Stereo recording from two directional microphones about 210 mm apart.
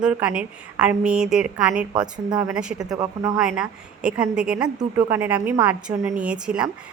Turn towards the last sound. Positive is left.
turn(degrees=-5)  # may be behind; listen again after turning